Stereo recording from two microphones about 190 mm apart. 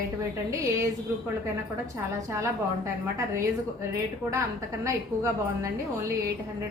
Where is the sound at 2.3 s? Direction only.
15° right (ahead or behind).